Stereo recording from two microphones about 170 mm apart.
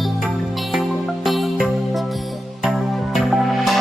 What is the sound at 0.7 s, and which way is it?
Music, centre (ahead or behind).